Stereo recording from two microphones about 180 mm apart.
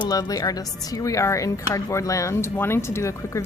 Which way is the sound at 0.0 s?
20° left (ahead or behind).